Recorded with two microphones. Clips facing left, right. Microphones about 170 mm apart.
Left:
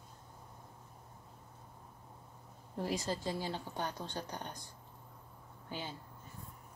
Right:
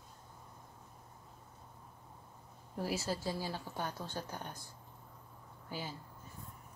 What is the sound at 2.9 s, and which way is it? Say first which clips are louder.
Speech: left 1 dB; 15° left (ahead or behind).